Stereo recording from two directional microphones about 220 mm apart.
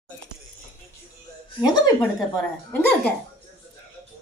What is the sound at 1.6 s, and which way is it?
Speech, 20° left (ahead or behind).